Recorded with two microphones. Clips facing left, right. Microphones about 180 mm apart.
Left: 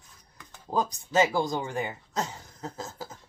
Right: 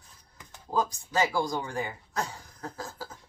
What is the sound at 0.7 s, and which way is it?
Speech, 20° left (ahead or behind).